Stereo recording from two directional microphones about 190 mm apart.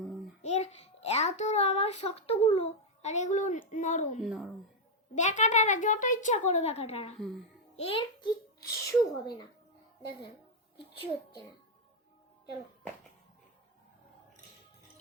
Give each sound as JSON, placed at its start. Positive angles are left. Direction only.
{"t": 0.4, "sound": "a child's voice", "side_deg": 35}
{"t": 4.2, "sound": "speech", "side_deg": 0}
{"t": 5.1, "sound": "a child's voice", "side_deg": 40}
{"t": 8.6, "sound": "speech", "side_deg": 15}